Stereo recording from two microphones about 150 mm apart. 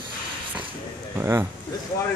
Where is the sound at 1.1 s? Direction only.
15° right (ahead or behind).